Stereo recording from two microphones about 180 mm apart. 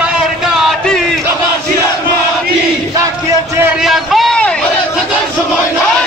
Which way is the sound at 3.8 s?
Centre (ahead or behind).